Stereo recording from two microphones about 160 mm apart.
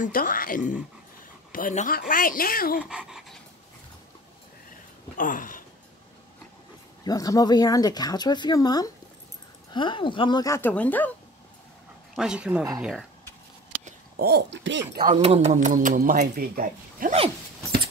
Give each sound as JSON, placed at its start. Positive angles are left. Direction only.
{"t": 0.0, "sound": "speech", "side_deg": 60}
{"t": 2.8, "sound": "speech", "side_deg": -5}
{"t": 5.1, "sound": "speech", "side_deg": 55}
{"t": 7.1, "sound": "speech", "side_deg": 25}
{"t": 12.2, "sound": "a woman's voice", "side_deg": -5}
{"t": 14.1, "sound": "speech", "side_deg": -85}
{"t": 15.0, "sound": "speech", "side_deg": -40}